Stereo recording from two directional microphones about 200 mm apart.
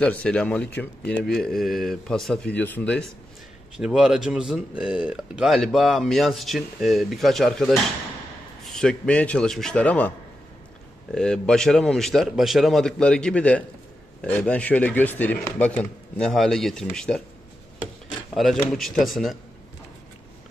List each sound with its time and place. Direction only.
0.0 s speech: 5° left (ahead or behind)
18.3 s speech: centre (ahead or behind)